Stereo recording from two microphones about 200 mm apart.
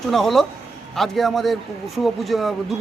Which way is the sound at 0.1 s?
Centre (ahead or behind).